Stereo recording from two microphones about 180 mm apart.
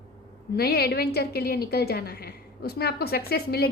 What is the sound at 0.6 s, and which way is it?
A woman's voice, 60° left (ahead or behind).